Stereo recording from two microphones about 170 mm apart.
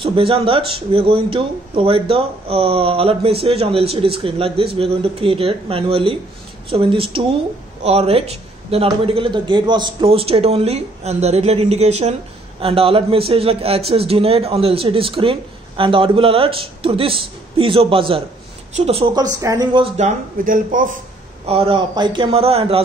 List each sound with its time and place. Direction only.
0.0 s a man's voice: 30° right (ahead or behind)
19.4 s speech: 20° right (ahead or behind)
20.0 s speech: 45° right (ahead or behind)
21.5 s a man's voice: 35° right (ahead or behind)